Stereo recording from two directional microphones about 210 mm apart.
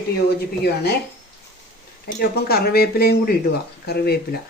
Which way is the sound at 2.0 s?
45° left (ahead or behind).